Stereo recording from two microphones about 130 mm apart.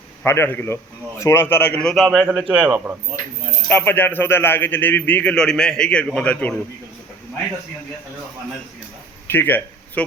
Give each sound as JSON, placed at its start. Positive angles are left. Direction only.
{"t": 0.3, "sound": "a man's voice", "side_deg": 15}
{"t": 1.8, "sound": "a man's voice", "side_deg": 0}
{"t": 2.0, "sound": "a man's voice", "side_deg": -10}
{"t": 3.7, "sound": "a man's voice", "side_deg": 15}
{"t": 9.2, "sound": "speech", "side_deg": 15}